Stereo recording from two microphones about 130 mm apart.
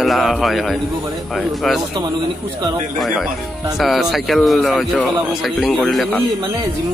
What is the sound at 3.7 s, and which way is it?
Speech, centre (ahead or behind).